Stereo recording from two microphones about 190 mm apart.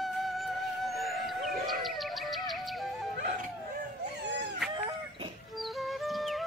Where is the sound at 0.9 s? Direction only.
55° left (ahead or behind).